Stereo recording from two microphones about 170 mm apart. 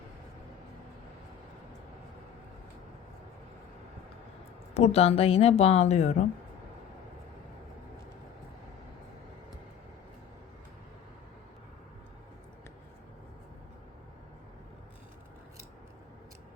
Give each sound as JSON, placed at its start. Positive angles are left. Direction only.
{"t": 4.7, "sound": "a woman's voice", "side_deg": 40}